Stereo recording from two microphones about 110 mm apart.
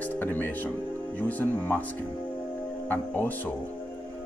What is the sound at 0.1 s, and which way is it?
Speech, 15° left (ahead or behind).